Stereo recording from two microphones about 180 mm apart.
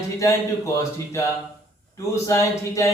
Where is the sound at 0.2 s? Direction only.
15° left (ahead or behind).